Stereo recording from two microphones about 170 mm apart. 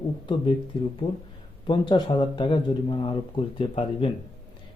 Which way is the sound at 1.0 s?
30° left (ahead or behind).